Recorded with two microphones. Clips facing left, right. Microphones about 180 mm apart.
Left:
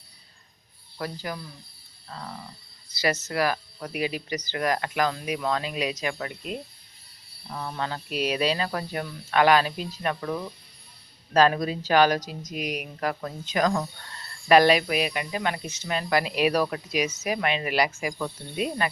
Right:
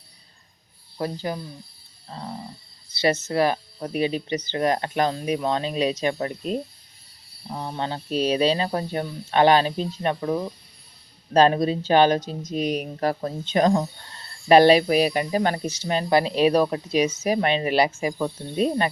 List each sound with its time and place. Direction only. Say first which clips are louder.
0.9 s speech: right 5 dB; 25° right (ahead or behind)